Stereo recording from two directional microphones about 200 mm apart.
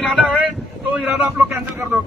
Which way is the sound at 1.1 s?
10° right (ahead or behind).